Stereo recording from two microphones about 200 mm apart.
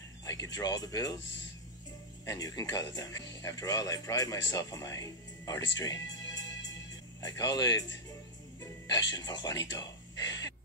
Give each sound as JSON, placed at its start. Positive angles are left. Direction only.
{"t": 0.2, "sound": "music", "side_deg": 15}
{"t": 0.6, "sound": "speech", "side_deg": 20}
{"t": 2.2, "sound": "speech", "side_deg": 20}
{"t": 5.8, "sound": "music", "side_deg": 20}
{"t": 7.2, "sound": "speech", "side_deg": 20}
{"t": 9.1, "sound": "speech", "side_deg": 20}